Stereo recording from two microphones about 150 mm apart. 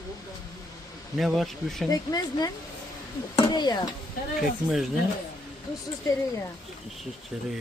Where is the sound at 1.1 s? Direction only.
Centre (ahead or behind).